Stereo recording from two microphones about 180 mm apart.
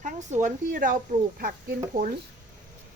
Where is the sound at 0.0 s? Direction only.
40° right (ahead or behind).